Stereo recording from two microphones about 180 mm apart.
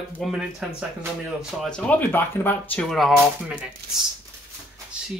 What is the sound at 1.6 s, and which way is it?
Speech, 5° left (ahead or behind).